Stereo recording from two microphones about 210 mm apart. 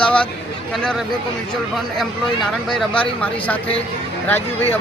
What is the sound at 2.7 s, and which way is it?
Speech, 5° left (ahead or behind).